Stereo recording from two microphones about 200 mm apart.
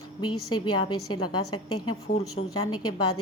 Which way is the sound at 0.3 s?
90° left.